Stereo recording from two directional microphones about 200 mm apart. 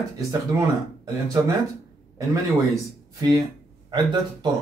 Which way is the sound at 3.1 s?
20° right (ahead or behind).